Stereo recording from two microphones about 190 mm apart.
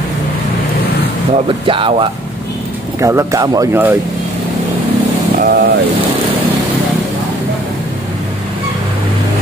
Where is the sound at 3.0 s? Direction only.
15° right (ahead or behind).